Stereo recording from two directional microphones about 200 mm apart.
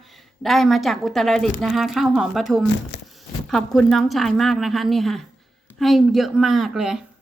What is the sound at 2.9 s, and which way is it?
Zipper, 60° left (ahead or behind).